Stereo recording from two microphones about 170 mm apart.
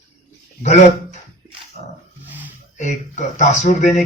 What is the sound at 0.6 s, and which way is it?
Speech, 40° left (ahead or behind).